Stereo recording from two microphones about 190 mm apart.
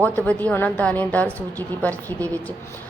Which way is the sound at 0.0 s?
5° left (ahead or behind).